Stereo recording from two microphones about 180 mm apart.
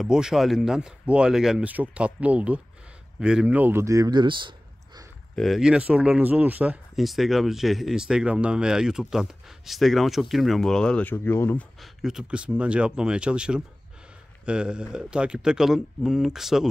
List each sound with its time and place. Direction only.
0.0 s speech: 5° right (ahead or behind); by 5.0 s 25° right (ahead or behind)
5.3 s speech: centre (ahead or behind)
11.8 s speech: centre (ahead or behind)